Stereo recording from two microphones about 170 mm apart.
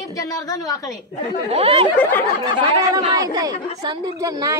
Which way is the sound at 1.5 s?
35° right (ahead or behind).